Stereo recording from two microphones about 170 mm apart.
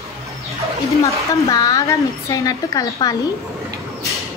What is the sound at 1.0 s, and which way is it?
A woman's voice, 20° left (ahead or behind).